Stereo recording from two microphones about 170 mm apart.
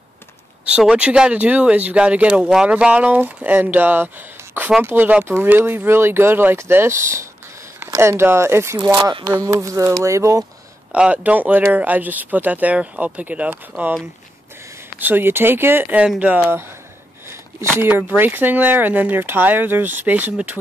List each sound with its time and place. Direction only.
0.7 s speech: 5° right (ahead or behind)
10.9 s speech: 5° right (ahead or behind)
15.0 s speech: 10° right (ahead or behind)